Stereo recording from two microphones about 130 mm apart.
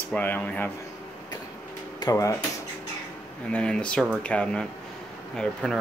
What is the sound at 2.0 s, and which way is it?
Speech, 25° left (ahead or behind).